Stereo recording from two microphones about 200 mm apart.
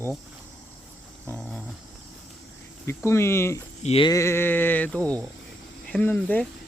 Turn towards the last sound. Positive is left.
turn(degrees=10)  # may be behind; listen again after turning